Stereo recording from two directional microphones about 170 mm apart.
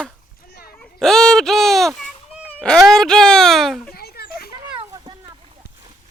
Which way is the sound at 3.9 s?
65° left (ahead or behind).